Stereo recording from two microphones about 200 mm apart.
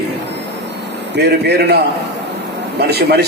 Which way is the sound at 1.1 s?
55° right (ahead or behind).